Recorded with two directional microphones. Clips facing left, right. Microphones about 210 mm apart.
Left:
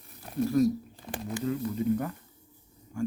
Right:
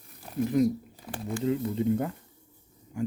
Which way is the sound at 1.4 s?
25° right (ahead or behind).